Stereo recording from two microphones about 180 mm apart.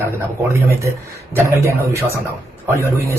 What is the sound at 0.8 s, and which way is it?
A man's voice, 15° right (ahead or behind).